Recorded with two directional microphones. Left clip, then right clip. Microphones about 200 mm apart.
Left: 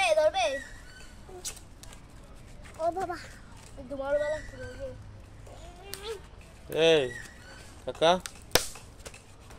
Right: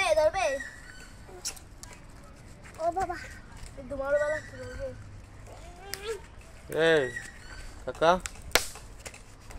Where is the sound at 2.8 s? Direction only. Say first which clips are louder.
Right 1 dB; 30° left (ahead or behind).